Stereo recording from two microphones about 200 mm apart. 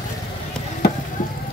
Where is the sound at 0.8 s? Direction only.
55° left (ahead or behind).